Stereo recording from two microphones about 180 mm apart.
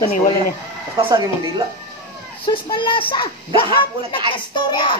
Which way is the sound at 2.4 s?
25° left (ahead or behind).